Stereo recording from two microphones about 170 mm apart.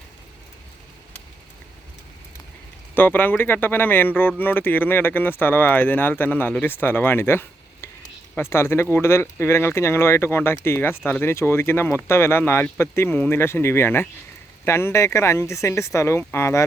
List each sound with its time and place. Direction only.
2.9 s speech: 10° left (ahead or behind)